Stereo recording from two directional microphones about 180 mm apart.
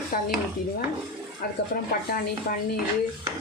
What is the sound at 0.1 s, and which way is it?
Speech, 55° left (ahead or behind).